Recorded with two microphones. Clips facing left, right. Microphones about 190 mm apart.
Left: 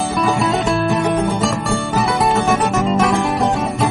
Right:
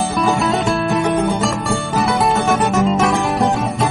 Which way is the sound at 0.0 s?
Centre (ahead or behind).